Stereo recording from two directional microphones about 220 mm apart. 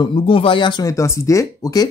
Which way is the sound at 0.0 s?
25° left (ahead or behind).